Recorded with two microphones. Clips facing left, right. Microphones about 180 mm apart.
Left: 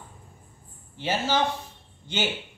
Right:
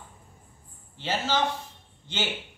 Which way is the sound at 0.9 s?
15° left (ahead or behind).